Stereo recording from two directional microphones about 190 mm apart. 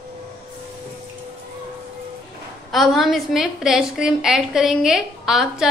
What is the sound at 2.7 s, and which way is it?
A woman's voice, centre (ahead or behind).